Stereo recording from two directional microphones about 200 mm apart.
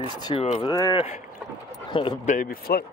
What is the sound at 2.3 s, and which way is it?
Speech, 45° left (ahead or behind).